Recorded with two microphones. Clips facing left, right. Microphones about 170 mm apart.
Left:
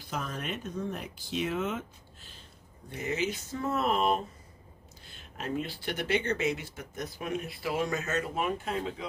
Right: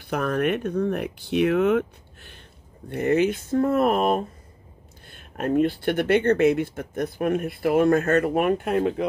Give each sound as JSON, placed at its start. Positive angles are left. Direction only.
{"t": 0.0, "sound": "speech", "side_deg": -65}